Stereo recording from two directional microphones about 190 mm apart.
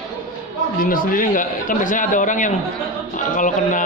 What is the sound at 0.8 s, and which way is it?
A man's voice, 50° left (ahead or behind).